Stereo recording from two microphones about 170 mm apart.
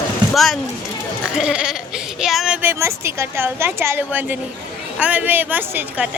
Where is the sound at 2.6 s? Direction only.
15° right (ahead or behind).